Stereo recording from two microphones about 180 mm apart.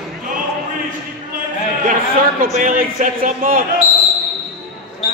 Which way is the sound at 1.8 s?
50° right (ahead or behind).